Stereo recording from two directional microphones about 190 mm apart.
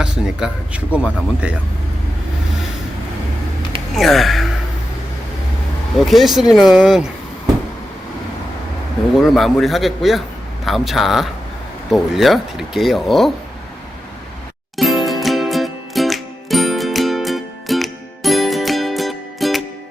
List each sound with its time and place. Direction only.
0.0 s speech: 5° right (ahead or behind)
3.9 s speech: centre (ahead or behind)
6.0 s speech: centre (ahead or behind)
9.1 s speech: centre (ahead or behind)
14.8 s music: centre (ahead or behind)